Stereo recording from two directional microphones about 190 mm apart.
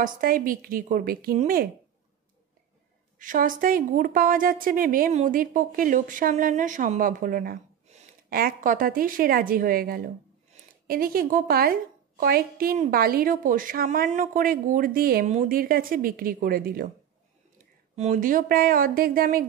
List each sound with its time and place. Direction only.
0.0 s a woman's voice: 45° right (ahead or behind)
3.2 s a woman's voice: 45° right (ahead or behind)
17.9 s a woman's voice: 40° right (ahead or behind)